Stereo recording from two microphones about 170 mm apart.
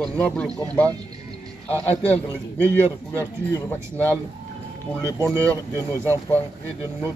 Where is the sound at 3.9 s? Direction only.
10° left (ahead or behind).